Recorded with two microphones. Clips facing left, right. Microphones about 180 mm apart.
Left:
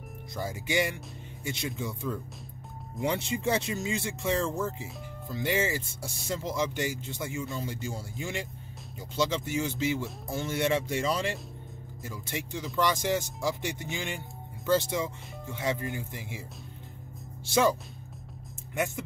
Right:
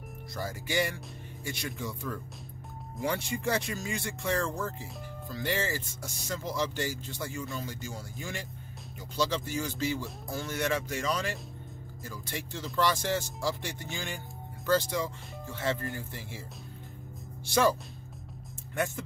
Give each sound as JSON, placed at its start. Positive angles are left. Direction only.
{"t": 0.4, "sound": "speech", "side_deg": 20}
{"t": 17.5, "sound": "speech", "side_deg": 20}